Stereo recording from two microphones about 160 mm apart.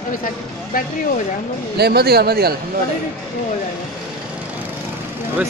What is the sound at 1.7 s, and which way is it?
Speech, 85° right.